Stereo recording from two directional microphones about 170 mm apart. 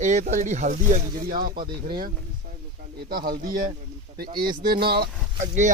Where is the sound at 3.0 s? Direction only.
60° right (ahead or behind).